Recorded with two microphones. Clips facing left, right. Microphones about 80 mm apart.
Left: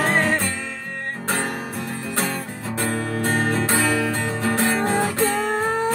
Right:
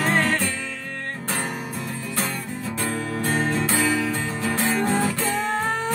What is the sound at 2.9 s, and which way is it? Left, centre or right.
Music, left.